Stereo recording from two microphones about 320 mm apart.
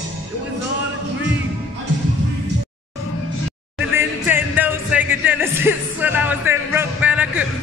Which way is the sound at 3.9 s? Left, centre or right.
Centre.